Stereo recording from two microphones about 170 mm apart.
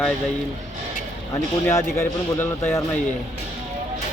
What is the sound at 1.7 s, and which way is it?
A man's voice, 15° left (ahead or behind).